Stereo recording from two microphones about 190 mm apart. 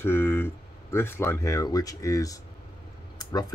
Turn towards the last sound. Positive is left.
turn(degrees=20)  # may be behind; listen again after turning